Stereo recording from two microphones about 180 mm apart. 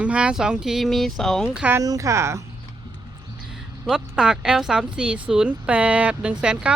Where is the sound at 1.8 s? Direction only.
20° right (ahead or behind).